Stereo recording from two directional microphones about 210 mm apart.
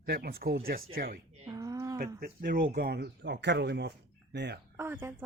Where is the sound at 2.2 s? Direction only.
45° right (ahead or behind).